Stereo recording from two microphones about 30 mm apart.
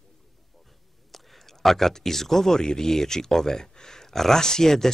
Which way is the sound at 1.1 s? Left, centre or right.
Centre.